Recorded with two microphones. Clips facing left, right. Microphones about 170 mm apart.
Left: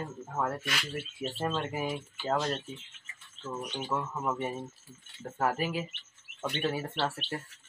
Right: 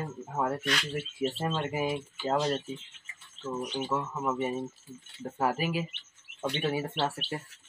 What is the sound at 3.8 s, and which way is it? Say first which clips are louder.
Speech: left 1 dB; centre (ahead or behind).